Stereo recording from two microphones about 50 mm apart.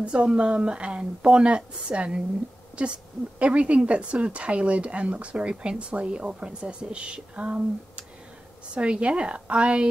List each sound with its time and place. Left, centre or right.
0.0 s speech: centre